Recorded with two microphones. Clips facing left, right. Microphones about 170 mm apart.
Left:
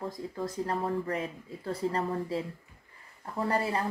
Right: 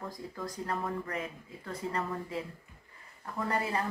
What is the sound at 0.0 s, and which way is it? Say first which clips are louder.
Speech: left 5 dB; 30° left (ahead or behind).